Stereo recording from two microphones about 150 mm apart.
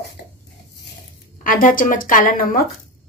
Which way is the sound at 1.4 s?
65° left (ahead or behind).